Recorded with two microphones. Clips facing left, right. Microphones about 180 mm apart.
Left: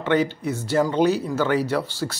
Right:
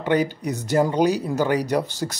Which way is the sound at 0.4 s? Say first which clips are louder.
Right 1 dB; 15° right (ahead or behind).